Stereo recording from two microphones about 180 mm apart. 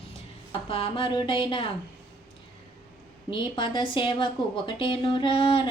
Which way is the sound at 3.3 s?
25° left (ahead or behind).